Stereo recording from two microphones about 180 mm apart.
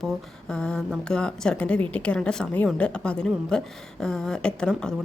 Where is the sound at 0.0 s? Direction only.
5° left (ahead or behind).